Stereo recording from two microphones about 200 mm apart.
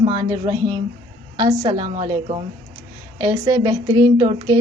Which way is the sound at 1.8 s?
30° right (ahead or behind).